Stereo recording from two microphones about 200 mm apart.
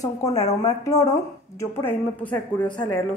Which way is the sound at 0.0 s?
15° left (ahead or behind).